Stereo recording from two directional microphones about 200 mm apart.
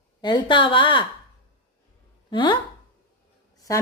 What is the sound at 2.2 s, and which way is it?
Speech, 25° left (ahead or behind).